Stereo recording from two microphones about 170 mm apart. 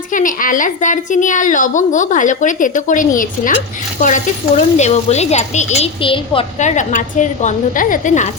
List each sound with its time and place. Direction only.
0.1 s a woman's voice: 50° left (ahead or behind); by 6.4 s 30° left (ahead or behind)
6.6 s a woman's voice: 45° left (ahead or behind)